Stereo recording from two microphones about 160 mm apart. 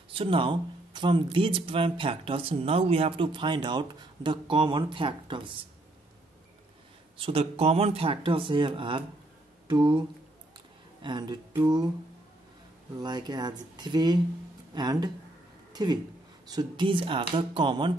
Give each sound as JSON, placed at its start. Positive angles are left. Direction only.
{"t": 0.1, "sound": "speech", "side_deg": -35}
{"t": 7.2, "sound": "speech", "side_deg": -35}
{"t": 13.0, "sound": "speech", "side_deg": -25}